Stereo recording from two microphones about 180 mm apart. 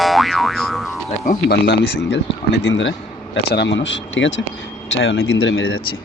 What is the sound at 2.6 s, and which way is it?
Speech, 85° left.